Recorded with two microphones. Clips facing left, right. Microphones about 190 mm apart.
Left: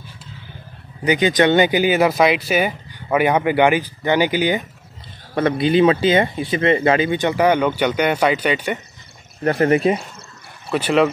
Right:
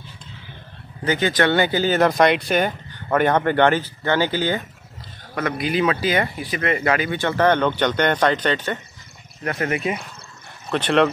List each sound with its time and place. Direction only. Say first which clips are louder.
1.0 s speech: left 4 dB; 15° left (ahead or behind)
5.3 s speech: left 6 dB; 30° left (ahead or behind); by 8.7 s 10° left (ahead or behind)
9.4 s speech: left 8 dB; 35° left (ahead or behind)
10.7 s speech: left 2 dB; 5° left (ahead or behind)